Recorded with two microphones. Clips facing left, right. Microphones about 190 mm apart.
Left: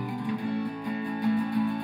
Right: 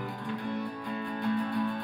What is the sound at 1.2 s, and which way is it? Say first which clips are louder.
Music: left 4 dB; 10° left (ahead or behind).